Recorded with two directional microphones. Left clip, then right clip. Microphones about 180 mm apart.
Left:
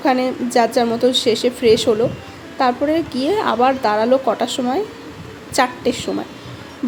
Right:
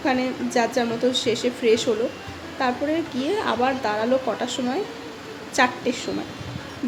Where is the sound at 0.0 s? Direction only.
35° left (ahead or behind).